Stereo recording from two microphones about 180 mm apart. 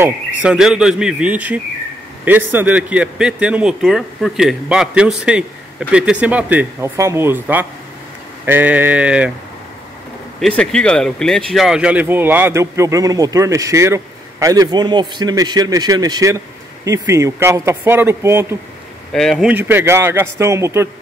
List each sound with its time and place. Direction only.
0.0 s speech: 5° right (ahead or behind)
10.4 s speech: 5° left (ahead or behind); by 18.6 s 15° right (ahead or behind)
19.1 s speech: centre (ahead or behind)
19.5 s speech: 10° right (ahead or behind)